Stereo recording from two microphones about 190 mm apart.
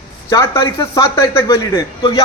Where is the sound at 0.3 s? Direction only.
15° left (ahead or behind).